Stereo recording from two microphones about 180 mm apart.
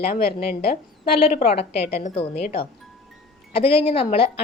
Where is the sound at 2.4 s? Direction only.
55° left (ahead or behind).